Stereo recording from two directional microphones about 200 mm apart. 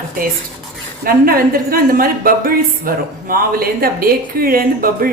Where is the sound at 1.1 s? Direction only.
45° right (ahead or behind).